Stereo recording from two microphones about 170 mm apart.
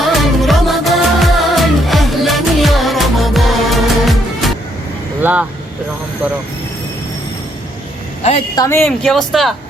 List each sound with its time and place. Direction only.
0.1 s music: centre (ahead or behind)
5.2 s vehicle: 10° right (ahead or behind)
8.5 s speech: 15° left (ahead or behind)
9.0 s speech: centre (ahead or behind)